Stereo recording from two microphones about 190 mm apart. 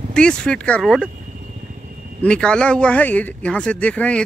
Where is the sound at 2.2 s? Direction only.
5° left (ahead or behind).